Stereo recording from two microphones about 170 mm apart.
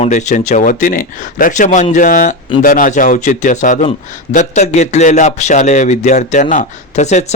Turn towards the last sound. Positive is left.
turn(degrees=45)  # may be behind; listen again after turning